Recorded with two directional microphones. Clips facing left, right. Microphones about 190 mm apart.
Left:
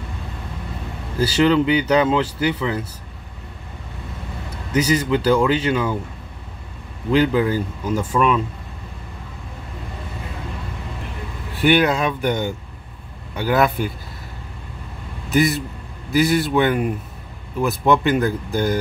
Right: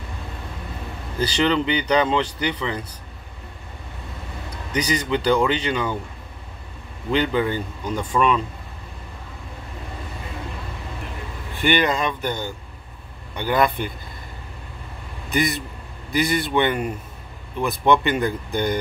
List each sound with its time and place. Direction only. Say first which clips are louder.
1.2 s speech: left 4 dB; 5° left (ahead or behind)
4.7 s speech: left 4 dB; 5° left (ahead or behind)
7.1 s speech: left 4 dB; 5° left (ahead or behind)
11.5 s speech: left 4 dB; 5° left (ahead or behind)
13.3 s speech: left 2 dB; 5° left (ahead or behind)
15.2 s a man's voice: left 5 dB; 5° left (ahead or behind)